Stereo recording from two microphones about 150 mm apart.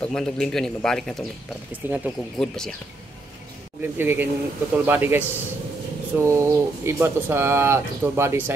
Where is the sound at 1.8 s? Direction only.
15° right (ahead or behind).